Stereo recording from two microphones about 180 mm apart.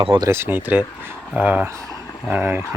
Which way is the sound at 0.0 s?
30° right (ahead or behind).